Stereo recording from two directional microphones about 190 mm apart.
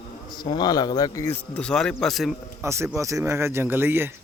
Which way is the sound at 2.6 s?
15° right (ahead or behind).